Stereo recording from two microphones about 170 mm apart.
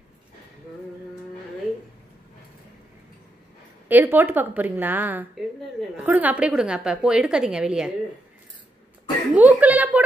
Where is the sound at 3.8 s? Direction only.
10° right (ahead or behind).